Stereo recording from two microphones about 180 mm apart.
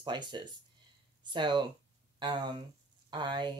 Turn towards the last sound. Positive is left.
turn(degrees=-25)  # may be behind; listen again after turning